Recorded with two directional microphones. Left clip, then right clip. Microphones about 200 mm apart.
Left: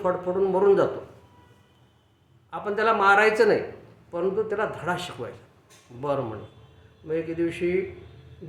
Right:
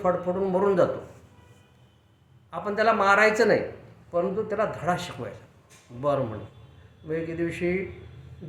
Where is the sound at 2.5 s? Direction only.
5° left (ahead or behind).